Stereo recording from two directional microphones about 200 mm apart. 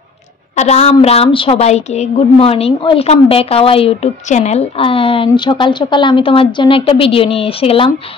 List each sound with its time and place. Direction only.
0.6 s a woman's voice: 35° left (ahead or behind)